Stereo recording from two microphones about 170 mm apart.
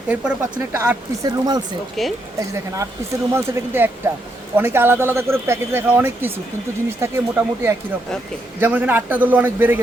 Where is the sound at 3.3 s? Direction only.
15° right (ahead or behind).